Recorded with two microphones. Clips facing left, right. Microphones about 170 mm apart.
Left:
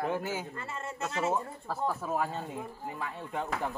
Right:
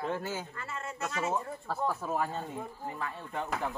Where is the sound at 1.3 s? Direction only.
5° left (ahead or behind).